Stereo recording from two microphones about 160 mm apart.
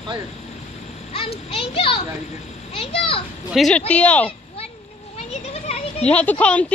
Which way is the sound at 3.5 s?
Centre (ahead or behind).